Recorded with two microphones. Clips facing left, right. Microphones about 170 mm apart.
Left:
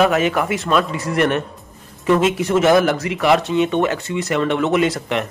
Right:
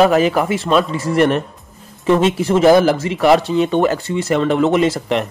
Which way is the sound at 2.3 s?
Centre (ahead or behind).